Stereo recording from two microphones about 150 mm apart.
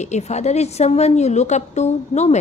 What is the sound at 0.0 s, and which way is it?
A woman's voice, 50° left (ahead or behind).